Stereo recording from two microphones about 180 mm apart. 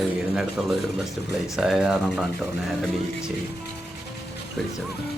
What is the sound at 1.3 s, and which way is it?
Speech, centre (ahead or behind).